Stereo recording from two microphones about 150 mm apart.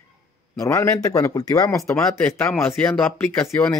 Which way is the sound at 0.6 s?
20° left (ahead or behind).